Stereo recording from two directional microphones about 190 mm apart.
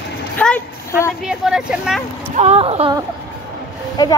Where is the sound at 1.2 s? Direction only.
5° right (ahead or behind).